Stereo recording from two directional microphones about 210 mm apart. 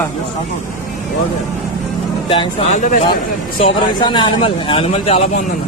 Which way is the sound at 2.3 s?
25° left (ahead or behind).